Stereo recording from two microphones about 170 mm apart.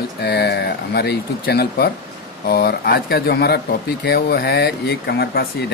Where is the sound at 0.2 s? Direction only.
75° left (ahead or behind).